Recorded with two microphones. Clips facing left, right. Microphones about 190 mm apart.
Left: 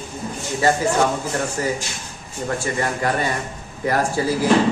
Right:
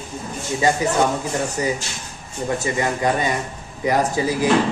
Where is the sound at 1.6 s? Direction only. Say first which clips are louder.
Right 1 dB; 15° right (ahead or behind).